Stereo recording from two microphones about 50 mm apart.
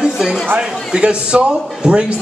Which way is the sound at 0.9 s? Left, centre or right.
Centre.